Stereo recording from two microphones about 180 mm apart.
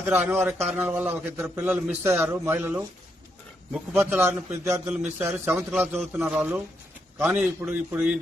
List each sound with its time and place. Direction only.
0.1 s a man's voice: 10° right (ahead or behind)
4.2 s a man's voice: 15° right (ahead or behind)